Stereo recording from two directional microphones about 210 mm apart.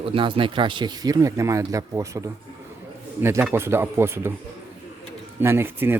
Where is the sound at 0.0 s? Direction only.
25° right (ahead or behind).